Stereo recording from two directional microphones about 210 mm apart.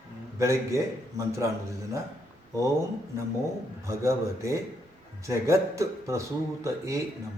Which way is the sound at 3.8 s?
15° right (ahead or behind).